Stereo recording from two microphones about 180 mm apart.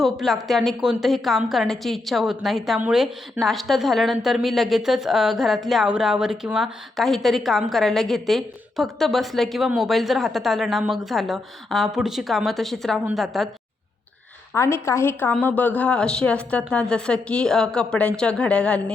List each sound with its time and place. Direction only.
0.0 s a woman's voice: centre (ahead or behind)
14.5 s a woman's voice: 15° left (ahead or behind)